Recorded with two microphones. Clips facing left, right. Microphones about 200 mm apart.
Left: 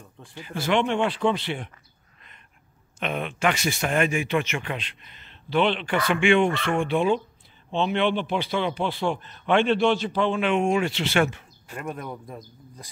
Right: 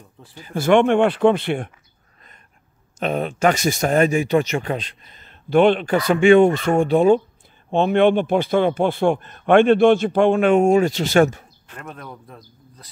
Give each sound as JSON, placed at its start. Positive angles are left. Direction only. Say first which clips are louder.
{"t": 0.4, "sound": "speech", "louder": "right 8 dB", "side_deg": -45}
{"t": 3.0, "sound": "speech", "louder": "right 6 dB", "side_deg": -40}
{"t": 11.6, "sound": "a man's voice", "louder": "left 4 dB", "side_deg": 10}